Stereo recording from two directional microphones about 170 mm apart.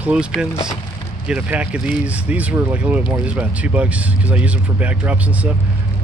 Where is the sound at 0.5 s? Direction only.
20° left (ahead or behind).